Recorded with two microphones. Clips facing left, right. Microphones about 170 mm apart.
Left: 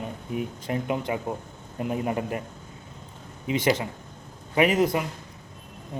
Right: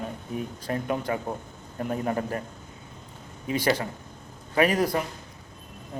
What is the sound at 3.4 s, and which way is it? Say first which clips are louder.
A man's voice: left 1 dB; 20° left (ahead or behind).